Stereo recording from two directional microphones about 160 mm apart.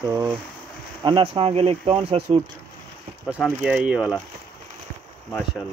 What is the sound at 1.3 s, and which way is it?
Speech, 40° right (ahead or behind).